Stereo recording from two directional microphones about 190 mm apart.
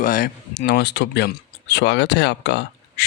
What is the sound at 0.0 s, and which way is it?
Speech, 50° left (ahead or behind).